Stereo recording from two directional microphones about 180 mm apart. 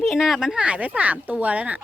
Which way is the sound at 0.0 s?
Centre (ahead or behind).